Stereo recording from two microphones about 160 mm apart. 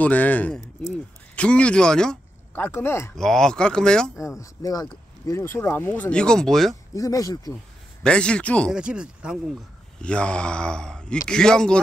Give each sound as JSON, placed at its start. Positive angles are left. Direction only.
{"t": 0.0, "sound": "speech", "side_deg": 10}
{"t": 3.2, "sound": "speech", "side_deg": 5}
{"t": 4.4, "sound": "speech", "side_deg": 25}
{"t": 7.0, "sound": "speech", "side_deg": 20}
{"t": 8.0, "sound": "speech", "side_deg": 5}
{"t": 8.7, "sound": "speech", "side_deg": -5}
{"t": 10.0, "sound": "speech", "side_deg": 5}